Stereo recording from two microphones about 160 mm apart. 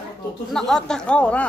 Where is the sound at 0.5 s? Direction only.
Centre (ahead or behind).